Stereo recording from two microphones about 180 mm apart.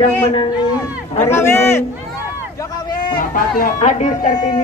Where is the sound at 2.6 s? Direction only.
25° left (ahead or behind).